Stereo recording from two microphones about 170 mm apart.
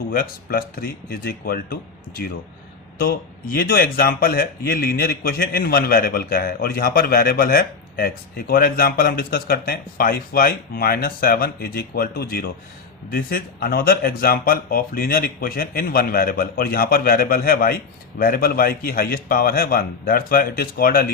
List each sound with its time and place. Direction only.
0.1 s speech: 60° left (ahead or behind)